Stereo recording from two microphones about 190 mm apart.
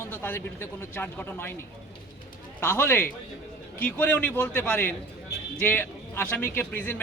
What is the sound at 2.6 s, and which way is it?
A man's voice, 10° left (ahead or behind).